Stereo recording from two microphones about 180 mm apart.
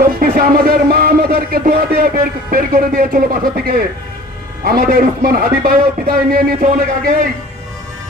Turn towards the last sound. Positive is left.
turn(degrees=-50)  # may be behind; listen again after turning